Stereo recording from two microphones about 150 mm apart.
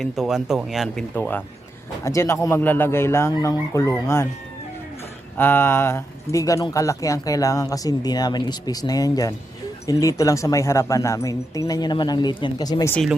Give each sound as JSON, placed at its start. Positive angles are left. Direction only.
{"t": 0.0, "sound": "speech", "side_deg": 0}
{"t": 1.1, "sound": "speech", "side_deg": 10}
{"t": 5.4, "sound": "speech", "side_deg": 15}